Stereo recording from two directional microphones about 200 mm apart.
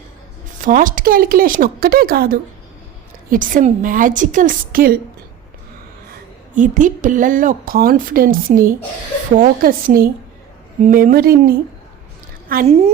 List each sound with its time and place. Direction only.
0.6 s a woman's voice: 40° right (ahead or behind)
6.1 s a woman's voice: 40° right (ahead or behind)
12.6 s a woman's voice: 30° right (ahead or behind)